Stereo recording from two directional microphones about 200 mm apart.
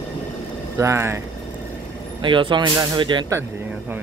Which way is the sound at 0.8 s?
15° right (ahead or behind).